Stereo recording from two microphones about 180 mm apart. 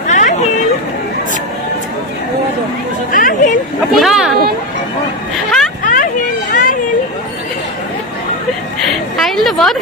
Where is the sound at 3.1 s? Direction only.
45° left (ahead or behind).